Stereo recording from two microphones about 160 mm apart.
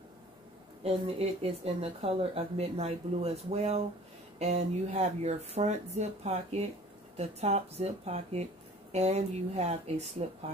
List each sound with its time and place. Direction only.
0.8 s speech: 40° right (ahead or behind)